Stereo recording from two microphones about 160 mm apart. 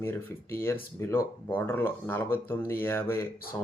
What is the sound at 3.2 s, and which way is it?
Speech, 65° left (ahead or behind).